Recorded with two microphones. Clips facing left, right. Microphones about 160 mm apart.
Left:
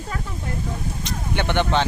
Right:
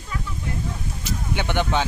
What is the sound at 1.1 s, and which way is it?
Vehicle, 10° right (ahead or behind).